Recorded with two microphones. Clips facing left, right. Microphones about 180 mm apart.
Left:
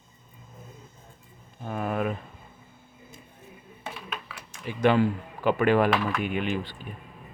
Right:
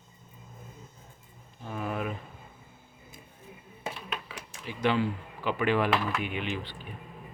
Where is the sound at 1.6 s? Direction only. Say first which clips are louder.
Left 5 dB; 55° left (ahead or behind).